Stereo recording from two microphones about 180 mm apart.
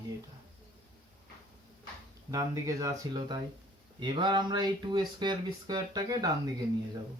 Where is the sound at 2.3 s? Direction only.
20° right (ahead or behind).